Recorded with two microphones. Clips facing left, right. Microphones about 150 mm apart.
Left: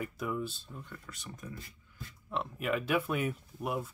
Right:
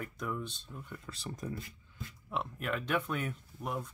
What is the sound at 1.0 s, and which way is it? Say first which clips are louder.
Speech: right 5 dB; 35° right (ahead or behind).